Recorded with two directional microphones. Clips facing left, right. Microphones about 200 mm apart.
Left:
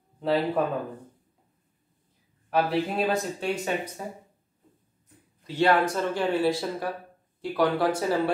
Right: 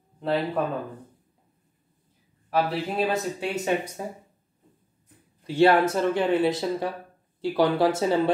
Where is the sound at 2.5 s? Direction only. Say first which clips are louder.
Left 1 dB; centre (ahead or behind).